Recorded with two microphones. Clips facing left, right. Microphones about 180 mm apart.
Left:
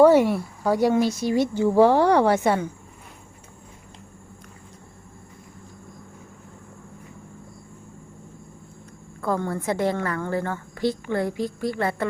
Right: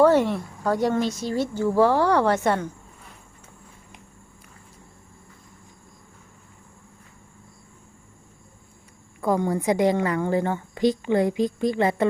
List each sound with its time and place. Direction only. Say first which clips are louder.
0.0 s speech: left 3 dB; 10° left (ahead or behind)
9.2 s a woman's voice: right 3 dB; 15° right (ahead or behind)